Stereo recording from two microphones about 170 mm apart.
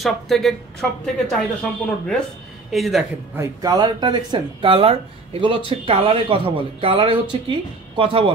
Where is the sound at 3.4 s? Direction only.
25° right (ahead or behind).